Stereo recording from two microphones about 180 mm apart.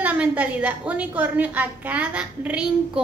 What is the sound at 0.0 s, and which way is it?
A woman's voice, 10° right (ahead or behind).